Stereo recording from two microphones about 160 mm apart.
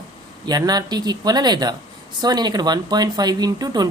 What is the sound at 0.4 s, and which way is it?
Speech, 25° right (ahead or behind).